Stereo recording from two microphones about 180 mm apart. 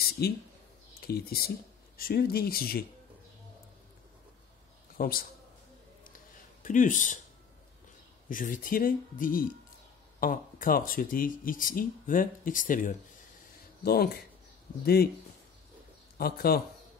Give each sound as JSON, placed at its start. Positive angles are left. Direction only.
{"t": 0.2, "sound": "speech", "side_deg": 60}
{"t": 4.9, "sound": "speech", "side_deg": 55}
{"t": 6.1, "sound": "a sound", "side_deg": 45}
{"t": 8.3, "sound": "speech", "side_deg": 50}
{"t": 13.8, "sound": "speech", "side_deg": 60}
{"t": 16.2, "sound": "speech", "side_deg": 60}